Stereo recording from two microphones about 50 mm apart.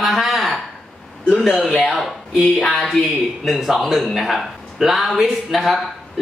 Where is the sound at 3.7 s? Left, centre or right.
Centre.